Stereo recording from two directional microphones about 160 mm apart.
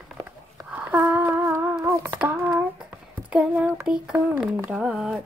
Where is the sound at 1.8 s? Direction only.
15° right (ahead or behind).